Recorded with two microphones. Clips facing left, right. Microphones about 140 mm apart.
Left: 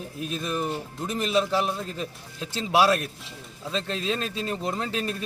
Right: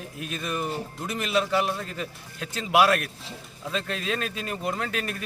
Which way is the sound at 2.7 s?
30° left (ahead or behind).